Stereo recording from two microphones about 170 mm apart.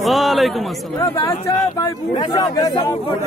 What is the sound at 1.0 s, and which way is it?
Speech, 20° left (ahead or behind).